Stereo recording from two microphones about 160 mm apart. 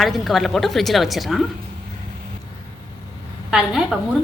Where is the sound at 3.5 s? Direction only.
Centre (ahead or behind).